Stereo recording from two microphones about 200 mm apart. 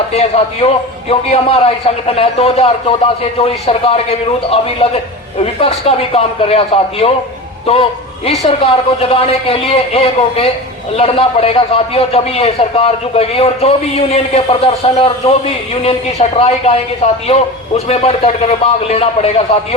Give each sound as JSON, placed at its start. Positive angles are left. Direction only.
{"t": 0.1, "sound": "a man's voice", "side_deg": 30}
{"t": 5.5, "sound": "a man's voice", "side_deg": 30}
{"t": 8.3, "sound": "a man's voice", "side_deg": 30}